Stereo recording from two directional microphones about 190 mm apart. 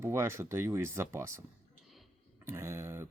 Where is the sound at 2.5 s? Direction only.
15° right (ahead or behind).